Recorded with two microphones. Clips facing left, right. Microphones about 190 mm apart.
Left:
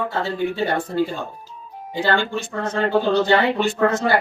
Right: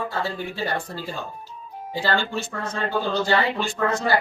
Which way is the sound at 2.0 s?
55° left (ahead or behind).